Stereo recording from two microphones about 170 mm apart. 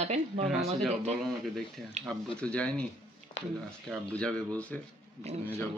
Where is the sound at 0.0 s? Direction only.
40° right (ahead or behind).